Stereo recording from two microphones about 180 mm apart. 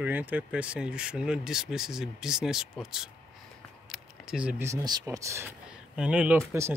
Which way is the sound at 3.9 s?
5° right (ahead or behind).